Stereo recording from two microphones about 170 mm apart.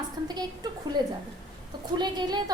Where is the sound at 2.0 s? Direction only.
25° right (ahead or behind).